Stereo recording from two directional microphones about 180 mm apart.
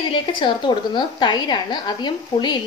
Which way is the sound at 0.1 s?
25° left (ahead or behind).